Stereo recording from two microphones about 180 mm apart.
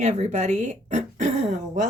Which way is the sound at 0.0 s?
40° right (ahead or behind).